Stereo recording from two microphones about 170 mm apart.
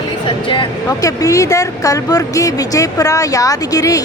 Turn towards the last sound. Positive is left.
turn(degrees=20)  # may be behind; listen again after turning